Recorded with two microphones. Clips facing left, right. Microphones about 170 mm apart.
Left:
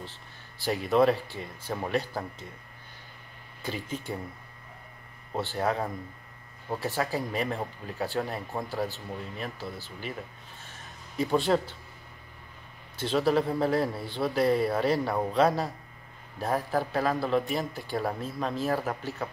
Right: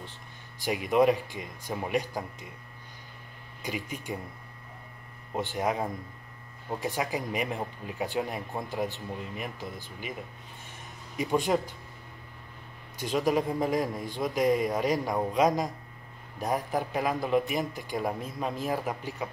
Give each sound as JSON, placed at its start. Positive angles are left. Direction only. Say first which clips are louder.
{"t": 0.6, "sound": "a man's voice", "louder": "left 1 dB", "side_deg": -15}
{"t": 3.6, "sound": "a man's voice", "louder": "left 1 dB", "side_deg": -15}
{"t": 5.3, "sound": "a man's voice", "louder": "left 1 dB", "side_deg": -15}
{"t": 10.7, "sound": "a sound", "louder": "right 2 dB", "side_deg": -15}
{"t": 11.3, "sound": "a man's voice", "louder": "left 1 dB", "side_deg": -15}
{"t": 13.0, "sound": "a man's voice", "louder": "left 2 dB", "side_deg": -15}